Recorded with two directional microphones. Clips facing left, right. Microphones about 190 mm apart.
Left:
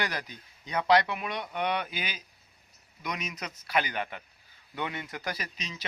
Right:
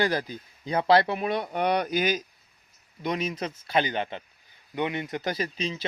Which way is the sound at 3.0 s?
30° right (ahead or behind).